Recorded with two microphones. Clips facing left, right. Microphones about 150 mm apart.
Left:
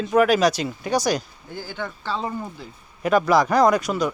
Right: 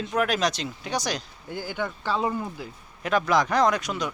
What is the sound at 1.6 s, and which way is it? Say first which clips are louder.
Speech: right 1 dB; 15° right (ahead or behind).